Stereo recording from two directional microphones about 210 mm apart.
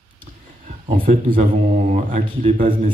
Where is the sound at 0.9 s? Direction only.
40° right (ahead or behind).